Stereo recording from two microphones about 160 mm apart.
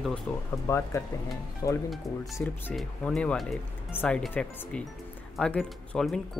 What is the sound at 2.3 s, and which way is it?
Speech, 10° left (ahead or behind).